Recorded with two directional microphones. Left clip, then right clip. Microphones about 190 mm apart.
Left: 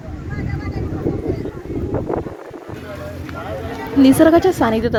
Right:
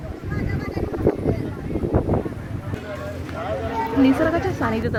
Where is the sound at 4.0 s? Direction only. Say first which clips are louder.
Left 9 dB; 35° left (ahead or behind).